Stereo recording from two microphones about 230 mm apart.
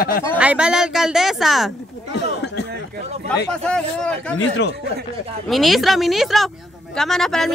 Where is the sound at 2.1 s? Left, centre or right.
Left.